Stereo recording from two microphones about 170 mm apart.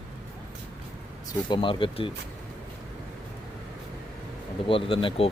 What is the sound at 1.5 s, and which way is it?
Speech, 30° left (ahead or behind).